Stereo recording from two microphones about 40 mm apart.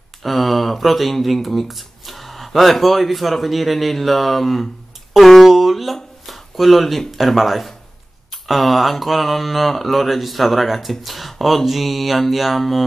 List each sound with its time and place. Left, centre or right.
0.2 s speech: centre
5.1 s a sound: centre
6.2 s speech: centre